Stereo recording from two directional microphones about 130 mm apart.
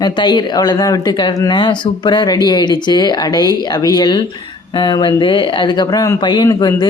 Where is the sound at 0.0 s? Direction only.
35° left (ahead or behind).